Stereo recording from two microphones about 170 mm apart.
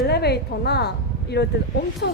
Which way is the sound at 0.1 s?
70° left (ahead or behind).